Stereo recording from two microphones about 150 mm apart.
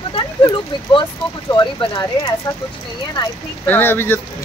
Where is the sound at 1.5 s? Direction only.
30° left (ahead or behind).